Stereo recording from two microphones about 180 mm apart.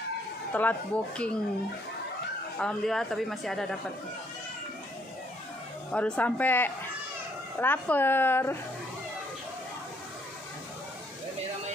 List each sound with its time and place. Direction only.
0.5 s speech: 10° left (ahead or behind)
2.6 s speech: centre (ahead or behind)
5.9 s speech: 5° left (ahead or behind)